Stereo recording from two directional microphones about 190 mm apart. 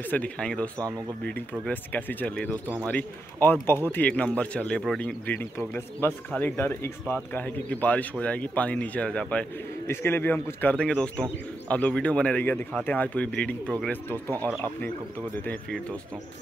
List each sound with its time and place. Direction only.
0.1 s speech: 5° left (ahead or behind)
0.7 s speech: 20° right (ahead or behind)
1.7 s speech: 10° left (ahead or behind)
15.3 s speech: 10° left (ahead or behind)